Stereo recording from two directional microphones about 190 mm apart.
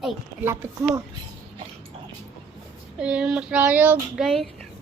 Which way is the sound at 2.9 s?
5° right (ahead or behind).